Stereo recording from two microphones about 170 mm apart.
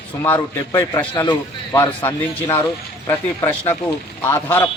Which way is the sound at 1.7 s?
10° left (ahead or behind).